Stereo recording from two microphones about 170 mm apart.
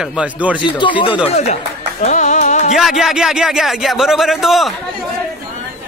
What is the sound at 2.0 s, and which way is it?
Music, 45° left (ahead or behind).